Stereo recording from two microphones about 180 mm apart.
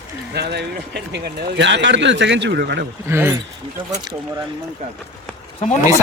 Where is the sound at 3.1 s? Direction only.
15° right (ahead or behind).